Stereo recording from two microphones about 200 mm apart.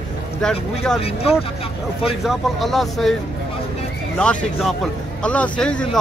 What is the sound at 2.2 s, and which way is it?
Speech, centre (ahead or behind).